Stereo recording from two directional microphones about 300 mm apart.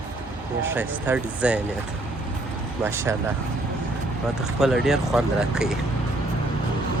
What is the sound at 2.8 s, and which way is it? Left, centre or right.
Speech, centre.